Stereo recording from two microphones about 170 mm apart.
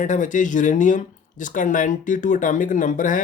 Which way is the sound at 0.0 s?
45° left (ahead or behind).